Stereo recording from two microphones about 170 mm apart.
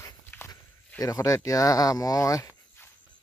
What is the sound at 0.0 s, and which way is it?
Walk, 10° left (ahead or behind).